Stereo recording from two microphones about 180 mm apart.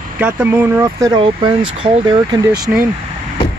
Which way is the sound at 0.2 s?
10° right (ahead or behind).